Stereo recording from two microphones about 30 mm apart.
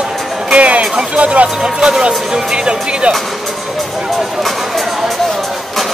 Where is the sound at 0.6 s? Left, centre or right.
Right.